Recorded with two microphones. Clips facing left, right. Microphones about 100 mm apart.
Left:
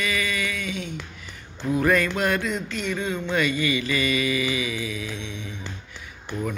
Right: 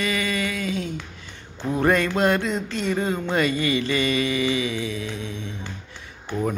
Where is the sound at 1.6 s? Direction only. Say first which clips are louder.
Right 1 dB; 30° right (ahead or behind).